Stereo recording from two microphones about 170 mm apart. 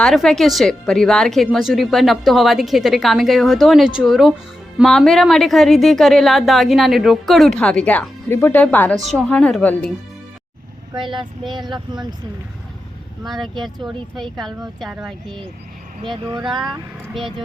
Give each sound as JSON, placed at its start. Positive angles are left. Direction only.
{"t": 0.0, "sound": "a woman's voice", "side_deg": 0}
{"t": 10.9, "sound": "speech", "side_deg": -30}
{"t": 13.2, "sound": "a woman's voice", "side_deg": 0}
{"t": 16.4, "sound": "a woman's voice", "side_deg": 0}